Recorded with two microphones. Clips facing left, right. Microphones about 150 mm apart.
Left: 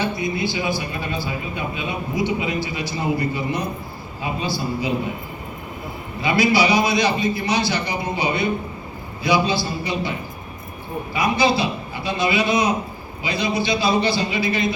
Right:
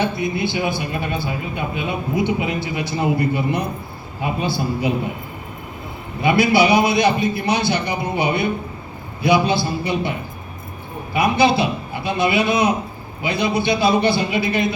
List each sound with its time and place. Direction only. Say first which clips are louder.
0.0 s a man's voice: right 2 dB; 60° right (ahead or behind)
6.2 s a man's voice: right 3 dB; 60° right (ahead or behind)